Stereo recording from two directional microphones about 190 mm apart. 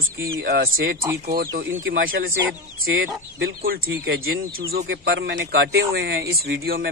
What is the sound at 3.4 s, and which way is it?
Speech, 50° right (ahead or behind).